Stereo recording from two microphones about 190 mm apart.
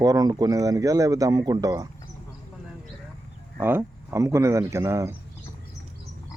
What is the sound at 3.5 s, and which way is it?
Speech, 10° right (ahead or behind).